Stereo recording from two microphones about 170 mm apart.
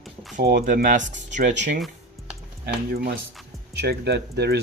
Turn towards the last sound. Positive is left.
turn(degrees=-75)  # may be behind; listen again after turning